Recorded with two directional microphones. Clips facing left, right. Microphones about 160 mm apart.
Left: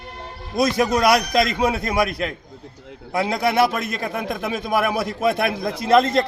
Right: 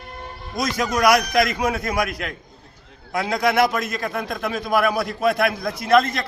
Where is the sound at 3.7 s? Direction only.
25° left (ahead or behind).